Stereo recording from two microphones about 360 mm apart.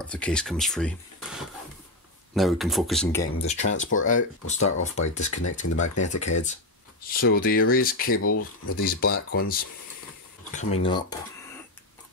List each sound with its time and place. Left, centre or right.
0.0 s speech: centre
4.6 s speech: left
5.0 s speech: centre
8.0 s speech: left
8.7 s speech: left